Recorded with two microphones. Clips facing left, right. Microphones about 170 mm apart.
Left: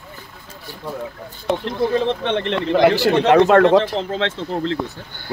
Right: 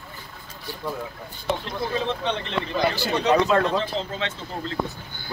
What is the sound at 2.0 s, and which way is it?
Speech, 70° left (ahead or behind).